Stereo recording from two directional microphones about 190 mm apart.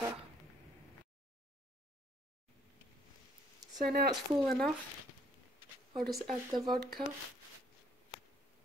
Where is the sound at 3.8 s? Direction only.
55° right (ahead or behind).